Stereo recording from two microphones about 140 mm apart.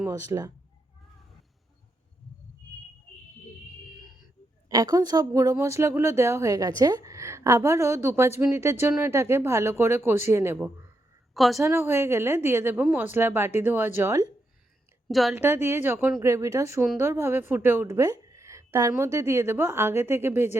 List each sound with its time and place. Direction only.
0.1 s speech: 25° right (ahead or behind)
4.7 s speech: 25° right (ahead or behind)
11.3 s a woman's voice: centre (ahead or behind)
11.6 s speech: 20° right (ahead or behind)
15.0 s a woman's voice: centre (ahead or behind)
15.4 s speech: 15° right (ahead or behind)